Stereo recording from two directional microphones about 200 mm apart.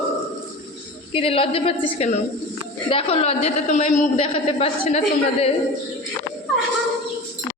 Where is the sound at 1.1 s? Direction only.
30° left (ahead or behind).